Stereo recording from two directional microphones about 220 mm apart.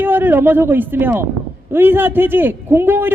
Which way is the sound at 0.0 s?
10° right (ahead or behind).